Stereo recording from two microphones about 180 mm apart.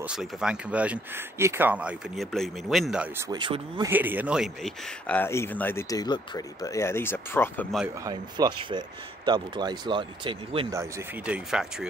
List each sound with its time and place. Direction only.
0.0 s speech: 5° right (ahead or behind)
3.2 s speech: 25° right (ahead or behind)
3.9 s speech: 10° right (ahead or behind); by 7.6 s 10° left (ahead or behind)
8.0 s speech: 20° right (ahead or behind)
10.7 s speech: 15° right (ahead or behind)